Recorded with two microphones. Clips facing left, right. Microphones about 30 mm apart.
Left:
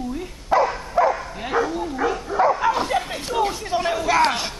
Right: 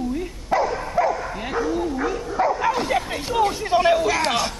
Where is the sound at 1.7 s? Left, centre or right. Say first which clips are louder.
Right 2 dB; centre.